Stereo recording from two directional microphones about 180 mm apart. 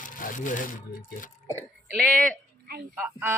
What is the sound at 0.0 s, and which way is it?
Speech, 45° left (ahead or behind).